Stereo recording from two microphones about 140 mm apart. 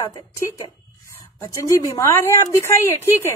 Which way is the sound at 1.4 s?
25° left (ahead or behind).